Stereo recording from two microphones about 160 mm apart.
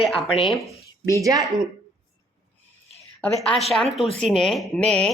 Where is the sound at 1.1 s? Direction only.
20° right (ahead or behind).